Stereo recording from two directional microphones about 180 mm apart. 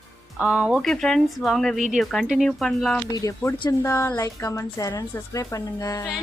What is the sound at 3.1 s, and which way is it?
A woman's voice, 20° left (ahead or behind).